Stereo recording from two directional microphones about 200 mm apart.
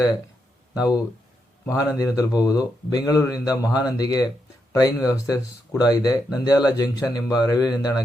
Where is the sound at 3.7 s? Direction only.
5° right (ahead or behind).